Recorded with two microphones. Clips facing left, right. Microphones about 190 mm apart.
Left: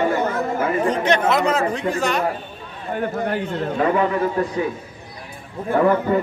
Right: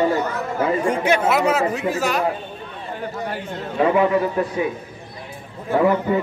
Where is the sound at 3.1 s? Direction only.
55° left (ahead or behind).